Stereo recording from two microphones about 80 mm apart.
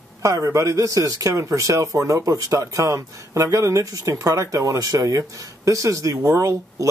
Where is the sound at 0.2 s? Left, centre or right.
Right.